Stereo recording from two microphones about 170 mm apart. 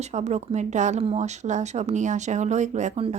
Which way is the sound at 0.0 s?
40° right (ahead or behind).